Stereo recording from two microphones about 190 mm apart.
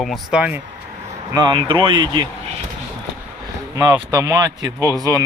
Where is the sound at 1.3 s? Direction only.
25° right (ahead or behind).